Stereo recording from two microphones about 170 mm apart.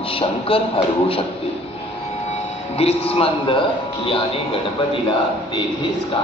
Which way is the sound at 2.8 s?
35° left (ahead or behind).